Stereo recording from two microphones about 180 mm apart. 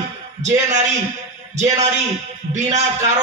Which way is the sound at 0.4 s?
40° right (ahead or behind).